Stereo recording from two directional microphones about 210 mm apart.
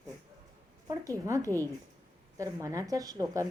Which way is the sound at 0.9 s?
15° right (ahead or behind).